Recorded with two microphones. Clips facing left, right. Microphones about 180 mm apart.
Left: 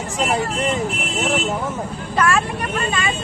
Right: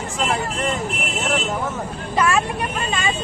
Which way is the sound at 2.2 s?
15° right (ahead or behind).